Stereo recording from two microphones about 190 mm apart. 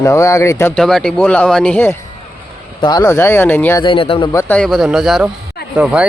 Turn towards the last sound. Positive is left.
turn(degrees=-5)  # may be behind; listen again after turning